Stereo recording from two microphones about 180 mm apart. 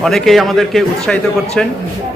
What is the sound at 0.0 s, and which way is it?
A man's voice, centre (ahead or behind).